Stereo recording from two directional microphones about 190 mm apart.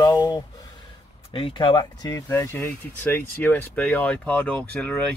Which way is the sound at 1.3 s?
25° left (ahead or behind).